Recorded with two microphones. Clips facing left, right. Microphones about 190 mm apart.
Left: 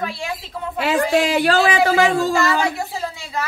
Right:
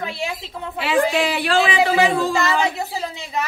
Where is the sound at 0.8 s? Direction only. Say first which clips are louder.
Left 1 dB; 45° left (ahead or behind).